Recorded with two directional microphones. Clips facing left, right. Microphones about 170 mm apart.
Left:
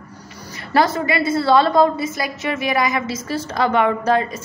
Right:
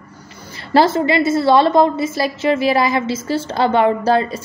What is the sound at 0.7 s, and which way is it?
A woman's voice, 30° right (ahead or behind).